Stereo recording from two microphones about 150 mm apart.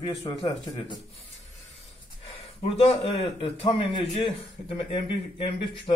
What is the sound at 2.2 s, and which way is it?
A man's voice, 40° left (ahead or behind).